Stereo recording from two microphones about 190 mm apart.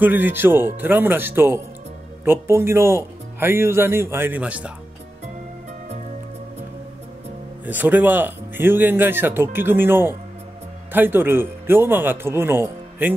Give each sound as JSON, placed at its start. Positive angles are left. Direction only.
{"t": 0.0, "sound": "speech", "side_deg": -10}
{"t": 7.6, "sound": "speech", "side_deg": -10}